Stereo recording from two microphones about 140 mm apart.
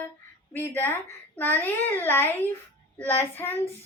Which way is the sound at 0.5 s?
15° left (ahead or behind).